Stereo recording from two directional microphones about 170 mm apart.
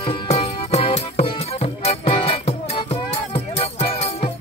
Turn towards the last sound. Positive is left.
turn(degrees=35)  # may be behind; listen again after turning